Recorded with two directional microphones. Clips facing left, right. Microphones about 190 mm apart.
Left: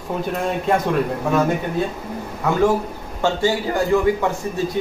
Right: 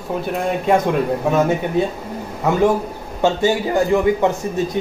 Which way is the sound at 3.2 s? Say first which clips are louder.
Right 3 dB; 20° right (ahead or behind).